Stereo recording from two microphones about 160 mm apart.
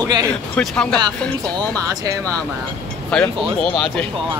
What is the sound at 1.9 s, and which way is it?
Speech, 25° right (ahead or behind).